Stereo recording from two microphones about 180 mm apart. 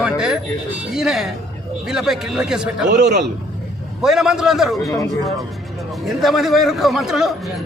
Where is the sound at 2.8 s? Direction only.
70° right (ahead or behind).